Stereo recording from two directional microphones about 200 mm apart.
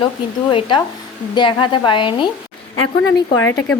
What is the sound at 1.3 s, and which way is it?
A woman's voice, 25° left (ahead or behind).